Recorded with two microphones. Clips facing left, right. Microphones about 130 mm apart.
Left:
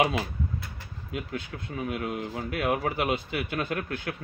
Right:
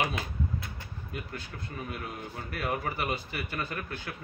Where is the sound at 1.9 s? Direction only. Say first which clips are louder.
Left 7 dB; 90° left.